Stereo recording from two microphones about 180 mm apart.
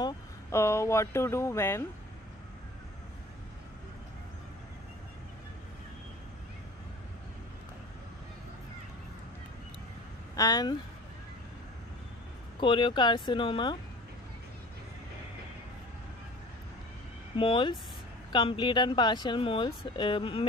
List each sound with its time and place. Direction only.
0.0 s speech: 15° left (ahead or behind)
10.3 s speech: 20° left (ahead or behind)
12.5 s speech: 25° left (ahead or behind)
17.4 s speech: 30° left (ahead or behind)